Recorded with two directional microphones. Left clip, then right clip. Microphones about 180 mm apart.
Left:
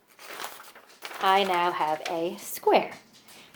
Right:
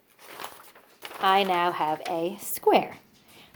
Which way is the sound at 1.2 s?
30° right (ahead or behind).